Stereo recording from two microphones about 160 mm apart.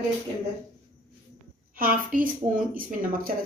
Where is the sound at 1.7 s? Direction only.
60° right (ahead or behind).